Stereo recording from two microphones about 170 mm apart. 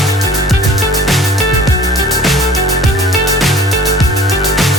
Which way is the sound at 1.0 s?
Centre (ahead or behind).